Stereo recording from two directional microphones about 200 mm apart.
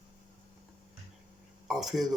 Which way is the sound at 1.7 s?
Centre (ahead or behind).